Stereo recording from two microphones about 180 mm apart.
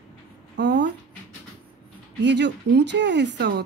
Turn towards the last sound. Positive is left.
turn(degrees=-70)  # may be behind; listen again after turning